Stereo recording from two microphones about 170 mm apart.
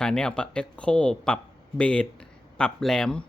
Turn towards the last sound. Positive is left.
turn(degrees=5)  # may be behind; listen again after turning